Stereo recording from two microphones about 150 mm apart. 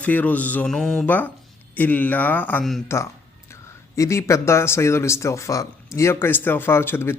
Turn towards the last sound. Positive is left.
turn(degrees=15)  # may be behind; listen again after turning